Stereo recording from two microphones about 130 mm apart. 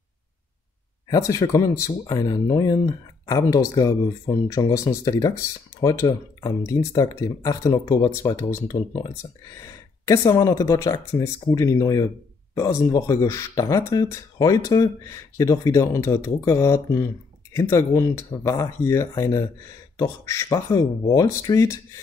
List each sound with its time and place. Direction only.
1.0 s speech: 25° left (ahead or behind)